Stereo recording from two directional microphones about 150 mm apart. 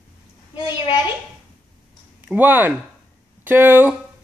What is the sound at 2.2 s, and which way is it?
Speech, 10° right (ahead or behind).